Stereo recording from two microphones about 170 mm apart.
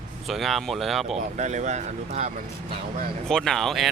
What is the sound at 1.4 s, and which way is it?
Speech, 45° right (ahead or behind).